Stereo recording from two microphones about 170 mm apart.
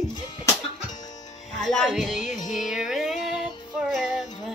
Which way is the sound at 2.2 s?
45° left (ahead or behind).